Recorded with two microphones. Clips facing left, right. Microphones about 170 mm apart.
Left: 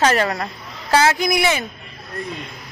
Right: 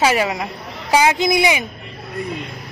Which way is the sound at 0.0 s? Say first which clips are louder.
Even; 10° right (ahead or behind).